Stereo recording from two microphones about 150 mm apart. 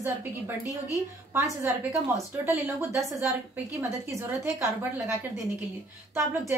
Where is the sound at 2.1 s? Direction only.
20° right (ahead or behind).